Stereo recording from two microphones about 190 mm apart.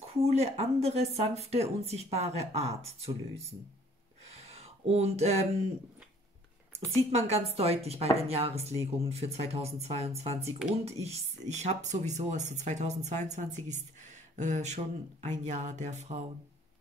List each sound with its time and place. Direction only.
0.0 s speech: 35° right (ahead or behind)
4.3 s a sound: 30° right (ahead or behind)
7.0 s speech: 35° right (ahead or behind)